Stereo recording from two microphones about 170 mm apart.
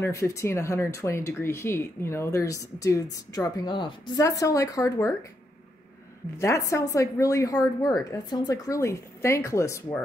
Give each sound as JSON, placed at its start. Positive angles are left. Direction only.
{"t": 0.0, "sound": "speech", "side_deg": 15}
{"t": 6.3, "sound": "a woman's voice", "side_deg": 15}